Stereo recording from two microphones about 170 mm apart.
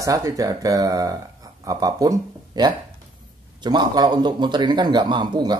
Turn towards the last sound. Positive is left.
turn(degrees=-25)  # may be behind; listen again after turning